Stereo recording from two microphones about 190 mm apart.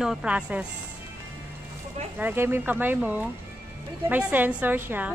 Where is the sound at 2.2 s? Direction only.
10° right (ahead or behind).